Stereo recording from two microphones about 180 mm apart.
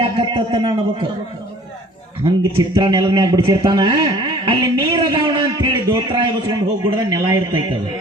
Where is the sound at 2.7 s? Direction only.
20° right (ahead or behind).